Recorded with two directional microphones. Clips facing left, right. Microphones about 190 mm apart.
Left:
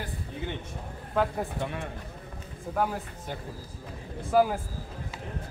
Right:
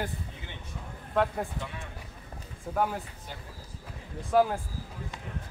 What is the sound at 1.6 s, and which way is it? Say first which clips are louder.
Speech: left 7 dB; 55° left (ahead or behind).